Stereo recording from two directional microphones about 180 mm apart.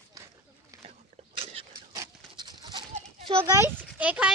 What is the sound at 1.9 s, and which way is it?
Dog, 20° right (ahead or behind).